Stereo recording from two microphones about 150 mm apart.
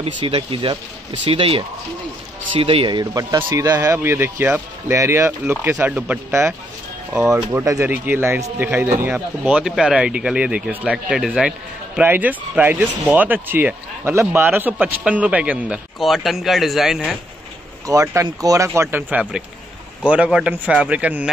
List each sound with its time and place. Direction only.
0.0 s speech: 35° right (ahead or behind); by 6.5 s 15° right (ahead or behind)
7.5 s speech: 20° right (ahead or behind); by 17.2 s centre (ahead or behind)
17.8 s speech: 20° right (ahead or behind)